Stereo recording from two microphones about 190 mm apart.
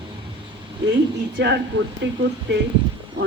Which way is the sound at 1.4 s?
65° right (ahead or behind).